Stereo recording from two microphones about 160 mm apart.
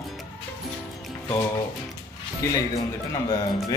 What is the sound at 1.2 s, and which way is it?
Speech, 25° left (ahead or behind).